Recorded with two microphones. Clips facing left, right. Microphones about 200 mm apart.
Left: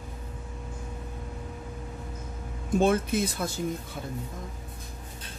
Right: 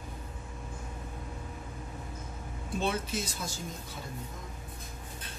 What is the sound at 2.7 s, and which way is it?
Speech, 50° left (ahead or behind).